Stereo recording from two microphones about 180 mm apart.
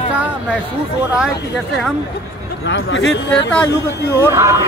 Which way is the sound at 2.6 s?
80° left.